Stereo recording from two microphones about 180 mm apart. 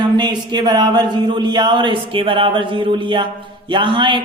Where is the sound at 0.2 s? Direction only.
25° right (ahead or behind).